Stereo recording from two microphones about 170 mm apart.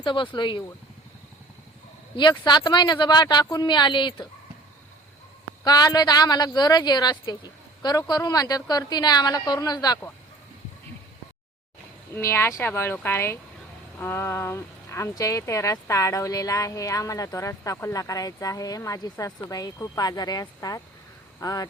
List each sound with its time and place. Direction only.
0.0 s speech: 30° left (ahead or behind)
2.4 s speech: 25° left (ahead or behind)
5.6 s speech: 25° left (ahead or behind)
12.1 s speech: 15° left (ahead or behind)